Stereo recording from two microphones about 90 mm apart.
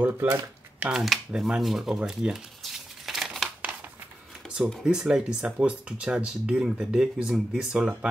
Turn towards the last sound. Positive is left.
turn(degrees=-5)  # may be behind; listen again after turning